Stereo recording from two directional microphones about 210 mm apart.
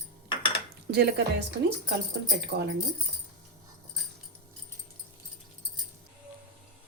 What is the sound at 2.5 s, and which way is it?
Speech, 50° right (ahead or behind).